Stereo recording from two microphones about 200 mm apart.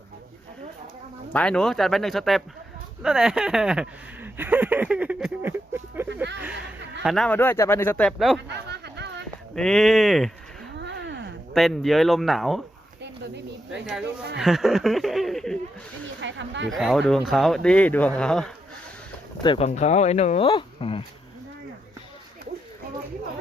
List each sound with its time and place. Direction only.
1.3 s speech: 5° left (ahead or behind); by 6.1 s 10° right (ahead or behind)
7.0 s speech: centre (ahead or behind)
8.4 s a sound: 55° right (ahead or behind)
9.6 s speech: 5° left (ahead or behind)
10.8 s a sound: 60° right (ahead or behind)
11.5 s speech: centre (ahead or behind)
13.0 s speech: 60° right (ahead or behind)
14.3 s speech: centre (ahead or behind)
16.2 s speech: 65° right (ahead or behind)
16.7 s speech: centre (ahead or behind)
19.4 s speech: 25° left (ahead or behind)